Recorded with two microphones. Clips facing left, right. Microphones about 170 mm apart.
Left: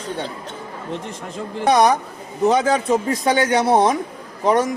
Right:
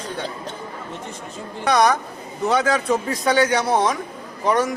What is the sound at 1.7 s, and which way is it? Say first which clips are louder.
A man's voice: left 2 dB; 20° left (ahead or behind).